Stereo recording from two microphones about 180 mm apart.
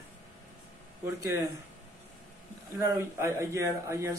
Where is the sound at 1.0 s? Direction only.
15° right (ahead or behind).